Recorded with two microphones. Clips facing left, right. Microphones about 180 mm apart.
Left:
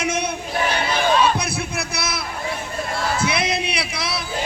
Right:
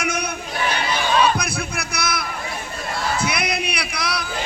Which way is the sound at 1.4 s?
25° left (ahead or behind).